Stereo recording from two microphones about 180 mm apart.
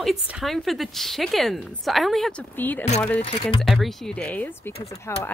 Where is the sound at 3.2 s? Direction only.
30° left (ahead or behind).